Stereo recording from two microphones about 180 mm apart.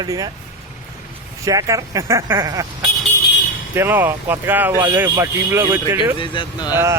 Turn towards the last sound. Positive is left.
turn(degrees=-10)  # may be behind; listen again after turning